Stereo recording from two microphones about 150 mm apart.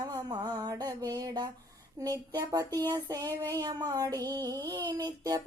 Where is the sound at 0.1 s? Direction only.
25° right (ahead or behind).